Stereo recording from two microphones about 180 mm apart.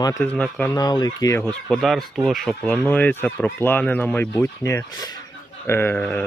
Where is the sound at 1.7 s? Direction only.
Centre (ahead or behind).